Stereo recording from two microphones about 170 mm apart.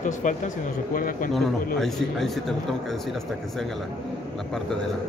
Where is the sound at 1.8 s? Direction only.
Centre (ahead or behind).